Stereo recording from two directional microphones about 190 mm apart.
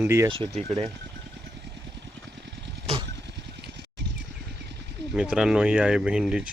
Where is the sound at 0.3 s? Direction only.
30° right (ahead or behind).